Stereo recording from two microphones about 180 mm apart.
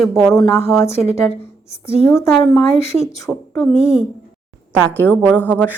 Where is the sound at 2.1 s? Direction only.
15° left (ahead or behind).